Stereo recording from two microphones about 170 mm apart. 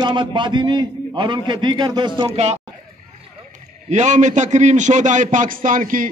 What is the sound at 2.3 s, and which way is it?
Speech, 40° right (ahead or behind).